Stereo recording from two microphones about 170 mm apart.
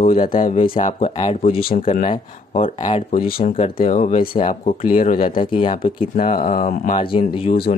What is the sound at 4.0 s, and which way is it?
Speech, 35° left (ahead or behind).